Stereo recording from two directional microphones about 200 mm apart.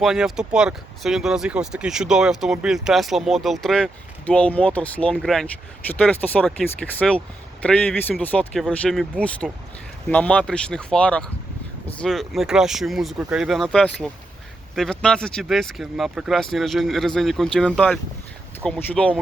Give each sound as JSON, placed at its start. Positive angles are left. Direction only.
{"t": 0.0, "sound": "speech", "side_deg": 0}